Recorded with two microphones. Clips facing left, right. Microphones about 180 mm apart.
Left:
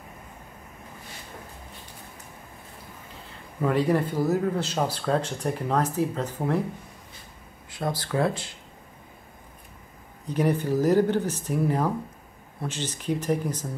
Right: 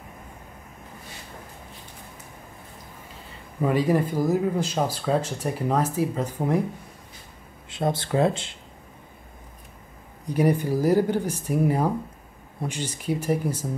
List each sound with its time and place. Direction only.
3.6 s speech: 10° right (ahead or behind)
7.7 s speech: 25° right (ahead or behind)
10.2 s speech: 10° right (ahead or behind)